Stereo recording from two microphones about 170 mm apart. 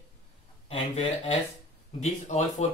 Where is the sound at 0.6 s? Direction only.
30° left (ahead or behind).